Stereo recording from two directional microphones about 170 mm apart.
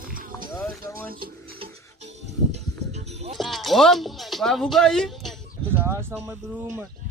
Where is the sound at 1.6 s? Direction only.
40° right (ahead or behind).